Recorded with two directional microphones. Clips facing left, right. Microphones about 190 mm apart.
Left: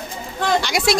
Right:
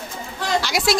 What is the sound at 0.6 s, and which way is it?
Speech, centre (ahead or behind).